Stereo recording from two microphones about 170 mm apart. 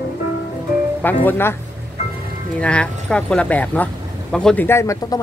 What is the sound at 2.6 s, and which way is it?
Speech, 5° left (ahead or behind).